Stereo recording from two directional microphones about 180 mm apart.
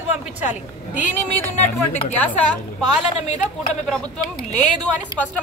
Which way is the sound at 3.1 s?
35° left (ahead or behind).